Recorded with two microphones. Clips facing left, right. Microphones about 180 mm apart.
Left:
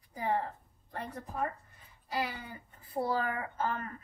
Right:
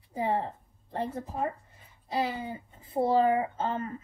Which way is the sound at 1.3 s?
25° right (ahead or behind).